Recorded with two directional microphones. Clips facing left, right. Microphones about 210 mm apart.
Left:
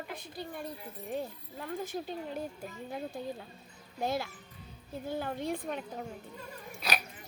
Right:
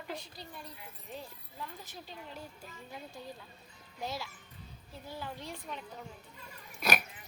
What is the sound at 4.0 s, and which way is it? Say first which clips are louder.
Speech: left 7 dB; 55° left (ahead or behind).